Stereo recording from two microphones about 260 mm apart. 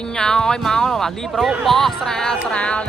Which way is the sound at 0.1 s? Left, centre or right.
Centre.